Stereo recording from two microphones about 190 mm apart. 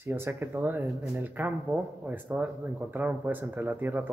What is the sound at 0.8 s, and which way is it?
A man's voice, centre (ahead or behind).